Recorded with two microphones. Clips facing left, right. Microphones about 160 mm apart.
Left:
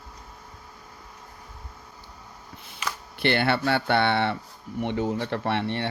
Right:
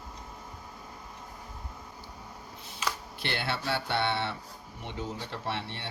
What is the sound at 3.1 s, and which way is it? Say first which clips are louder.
Speech: left 15 dB; 65° left (ahead or behind).